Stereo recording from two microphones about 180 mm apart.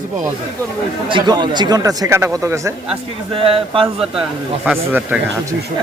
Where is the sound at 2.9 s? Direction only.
30° right (ahead or behind).